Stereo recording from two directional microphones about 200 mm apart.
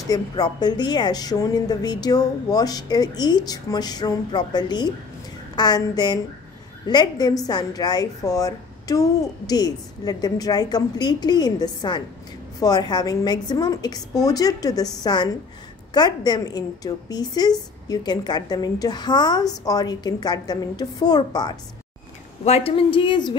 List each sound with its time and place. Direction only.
0.1 s a woman's voice: 20° left (ahead or behind)
15.9 s a woman's voice: 20° left (ahead or behind)
22.4 s a woman's voice: 30° left (ahead or behind)